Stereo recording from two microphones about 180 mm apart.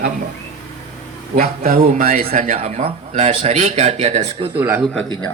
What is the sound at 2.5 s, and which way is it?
Speech, 35° right (ahead or behind).